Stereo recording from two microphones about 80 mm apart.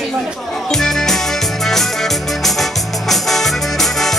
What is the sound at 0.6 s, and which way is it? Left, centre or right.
Music, centre.